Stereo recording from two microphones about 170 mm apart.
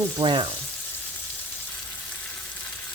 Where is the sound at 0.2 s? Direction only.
30° right (ahead or behind).